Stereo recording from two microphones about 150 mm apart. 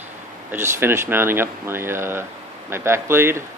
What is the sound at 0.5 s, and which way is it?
Speech, 15° right (ahead or behind).